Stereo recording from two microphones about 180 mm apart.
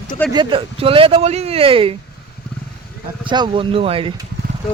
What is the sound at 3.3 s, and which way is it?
Speech, 25° right (ahead or behind).